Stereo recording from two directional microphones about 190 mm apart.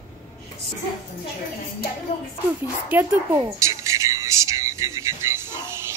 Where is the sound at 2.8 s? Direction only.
10° right (ahead or behind).